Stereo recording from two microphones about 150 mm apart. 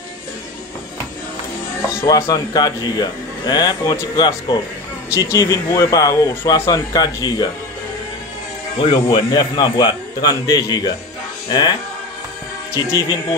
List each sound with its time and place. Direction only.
2.0 s speech: 20° left (ahead or behind)
4.2 s speech: 30° left (ahead or behind)
8.7 s speech: 30° left (ahead or behind)
12.7 s speech: 20° left (ahead or behind)